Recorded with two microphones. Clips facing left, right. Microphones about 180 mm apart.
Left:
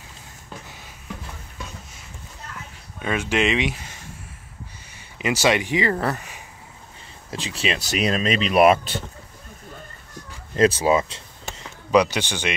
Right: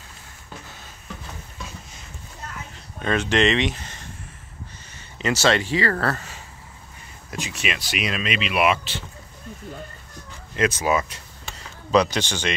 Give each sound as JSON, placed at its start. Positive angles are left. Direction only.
{"t": 3.0, "sound": "speech", "side_deg": 10}
{"t": 7.2, "sound": "speech", "side_deg": 25}
{"t": 10.5, "sound": "speech", "side_deg": 30}
{"t": 11.5, "sound": "a sound", "side_deg": 10}